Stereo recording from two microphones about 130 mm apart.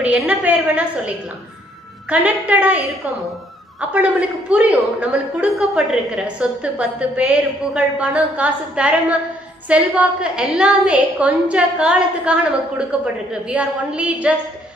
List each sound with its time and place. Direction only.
0.0 s a woman's voice: 10° right (ahead or behind)
3.9 s a woman's voice: 10° right (ahead or behind)